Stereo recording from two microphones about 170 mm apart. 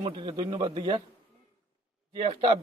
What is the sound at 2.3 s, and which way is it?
Speech, 30° right (ahead or behind).